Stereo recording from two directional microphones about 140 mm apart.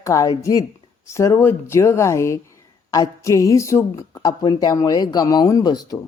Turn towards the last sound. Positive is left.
turn(degrees=30)  # may be behind; listen again after turning